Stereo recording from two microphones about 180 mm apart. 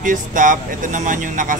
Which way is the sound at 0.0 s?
45° right (ahead or behind).